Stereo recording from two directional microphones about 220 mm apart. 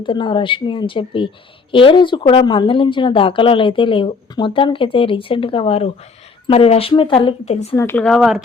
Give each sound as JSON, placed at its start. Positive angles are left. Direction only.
{"t": 0.0, "sound": "speech", "side_deg": 20}
{"t": 7.8, "sound": "speech", "side_deg": 10}